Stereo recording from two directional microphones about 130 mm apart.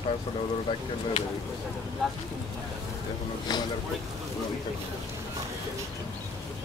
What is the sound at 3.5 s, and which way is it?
Speech, 30° left (ahead or behind).